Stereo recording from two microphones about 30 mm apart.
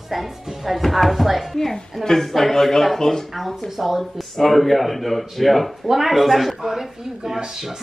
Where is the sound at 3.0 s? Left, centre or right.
Centre.